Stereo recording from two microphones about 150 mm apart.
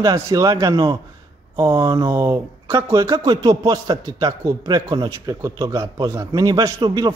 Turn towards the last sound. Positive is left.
turn(degrees=-30)  # may be behind; listen again after turning